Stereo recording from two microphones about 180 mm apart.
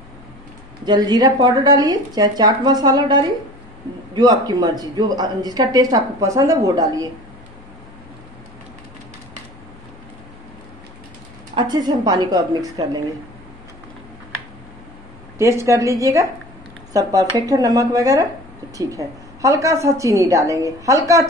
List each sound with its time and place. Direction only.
0.8 s speech: 25° right (ahead or behind)
11.5 s speech: 25° right (ahead or behind)
15.3 s a woman's voice: 15° right (ahead or behind)